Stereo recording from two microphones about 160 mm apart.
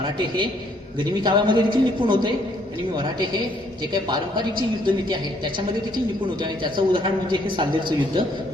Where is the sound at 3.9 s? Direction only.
25° right (ahead or behind).